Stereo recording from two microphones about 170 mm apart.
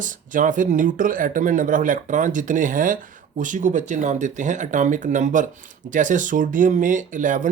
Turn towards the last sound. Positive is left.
turn(degrees=-50)  # may be behind; listen again after turning